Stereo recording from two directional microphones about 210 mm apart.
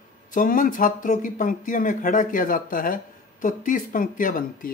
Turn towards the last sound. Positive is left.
turn(degrees=40)  # may be behind; listen again after turning